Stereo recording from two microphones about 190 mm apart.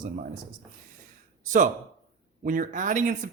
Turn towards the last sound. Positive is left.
turn(degrees=-45)  # may be behind; listen again after turning